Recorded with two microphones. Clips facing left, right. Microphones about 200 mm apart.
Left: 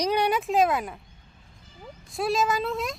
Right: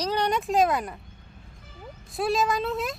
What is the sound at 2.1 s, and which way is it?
Speech, centre (ahead or behind).